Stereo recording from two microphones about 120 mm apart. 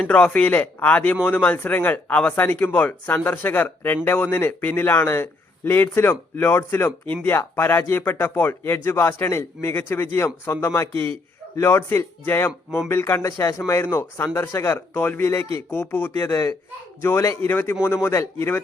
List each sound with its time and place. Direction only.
0.0 s speech: 10° left (ahead or behind)